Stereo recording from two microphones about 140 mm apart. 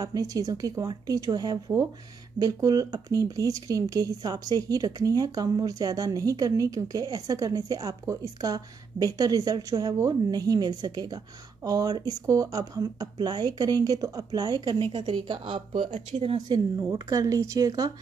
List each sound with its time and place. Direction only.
0.0 s speech: 25° right (ahead or behind)